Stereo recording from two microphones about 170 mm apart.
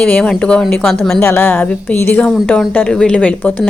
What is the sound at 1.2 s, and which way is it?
A woman's voice, 15° left (ahead or behind).